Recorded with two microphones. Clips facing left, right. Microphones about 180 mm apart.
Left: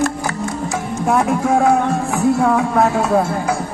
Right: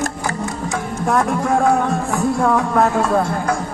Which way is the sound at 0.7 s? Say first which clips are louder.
Left 1 dB; 5° left (ahead or behind).